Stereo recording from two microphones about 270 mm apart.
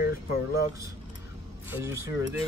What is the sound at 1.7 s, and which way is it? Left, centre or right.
Speech, centre.